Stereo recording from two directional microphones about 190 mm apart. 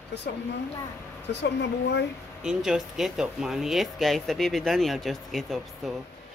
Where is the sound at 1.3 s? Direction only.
65° left (ahead or behind).